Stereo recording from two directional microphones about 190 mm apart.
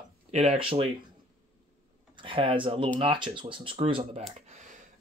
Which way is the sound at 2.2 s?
25° right (ahead or behind).